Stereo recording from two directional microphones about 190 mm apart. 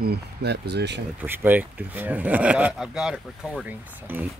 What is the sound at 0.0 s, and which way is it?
Speech, 60° right (ahead or behind).